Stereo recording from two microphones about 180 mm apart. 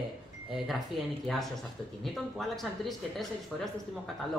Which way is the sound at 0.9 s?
Centre (ahead or behind).